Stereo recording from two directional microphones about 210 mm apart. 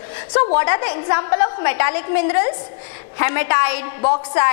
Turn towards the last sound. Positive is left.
turn(degrees=25)  # may be behind; listen again after turning